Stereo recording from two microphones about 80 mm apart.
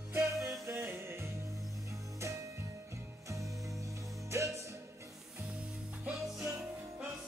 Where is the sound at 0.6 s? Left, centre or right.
Right.